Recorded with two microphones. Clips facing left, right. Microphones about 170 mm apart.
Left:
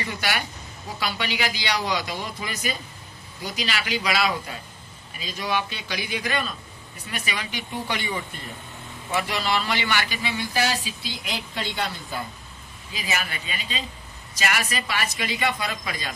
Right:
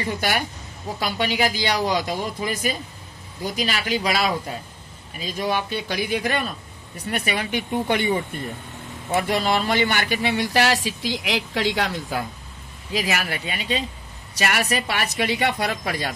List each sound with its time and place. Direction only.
0.0 s a man's voice: 45° right (ahead or behind)
9.1 s speech: 45° right (ahead or behind); by 12.3 s 90° right
12.9 s a woman's voice: 80° right